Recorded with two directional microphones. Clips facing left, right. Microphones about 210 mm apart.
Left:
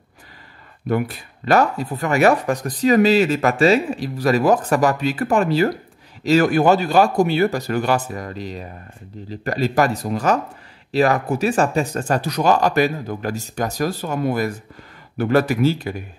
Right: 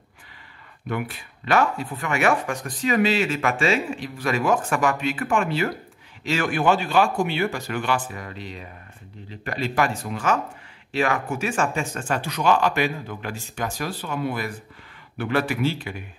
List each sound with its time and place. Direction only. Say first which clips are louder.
0.8 s speech: left 7 dB; 40° left (ahead or behind)